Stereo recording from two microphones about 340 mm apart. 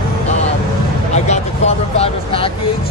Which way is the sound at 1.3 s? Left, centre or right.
Centre.